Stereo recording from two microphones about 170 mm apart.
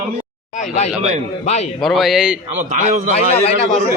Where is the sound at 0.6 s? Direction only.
40° left (ahead or behind).